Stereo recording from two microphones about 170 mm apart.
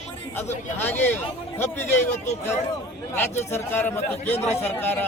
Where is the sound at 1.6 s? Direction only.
15° left (ahead or behind).